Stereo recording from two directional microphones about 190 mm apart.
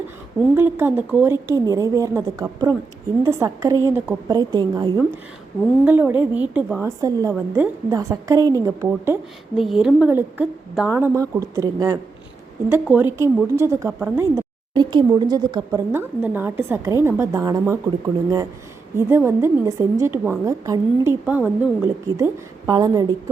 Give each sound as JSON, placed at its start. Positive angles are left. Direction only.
{"t": 0.5, "sound": "speech", "side_deg": -10}
{"t": 5.8, "sound": "speech", "side_deg": -10}
{"t": 9.6, "sound": "speech", "side_deg": 0}